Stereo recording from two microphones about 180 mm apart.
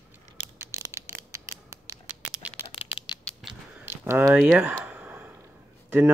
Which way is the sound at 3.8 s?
10° right (ahead or behind).